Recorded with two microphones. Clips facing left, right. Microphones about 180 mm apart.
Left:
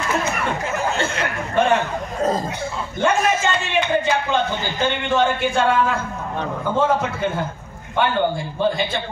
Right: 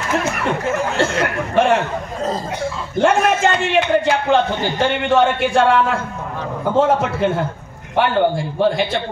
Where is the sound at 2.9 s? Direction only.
65° right (ahead or behind).